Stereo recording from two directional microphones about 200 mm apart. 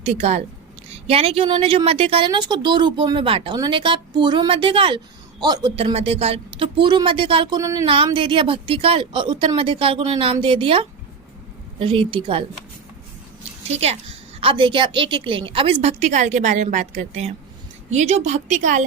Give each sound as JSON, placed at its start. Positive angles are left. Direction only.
{"t": 0.0, "sound": "a woman's voice", "side_deg": -30}
{"t": 13.7, "sound": "a woman's voice", "side_deg": -30}